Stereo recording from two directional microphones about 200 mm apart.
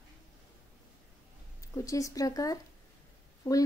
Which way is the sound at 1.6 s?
15° left (ahead or behind).